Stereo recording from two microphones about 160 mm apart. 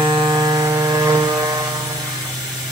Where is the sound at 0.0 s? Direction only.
25° right (ahead or behind).